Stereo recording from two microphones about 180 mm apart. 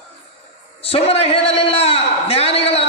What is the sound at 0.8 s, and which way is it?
A man's voice, 35° left (ahead or behind).